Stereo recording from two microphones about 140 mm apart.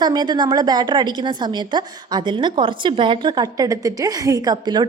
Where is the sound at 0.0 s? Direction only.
30° right (ahead or behind).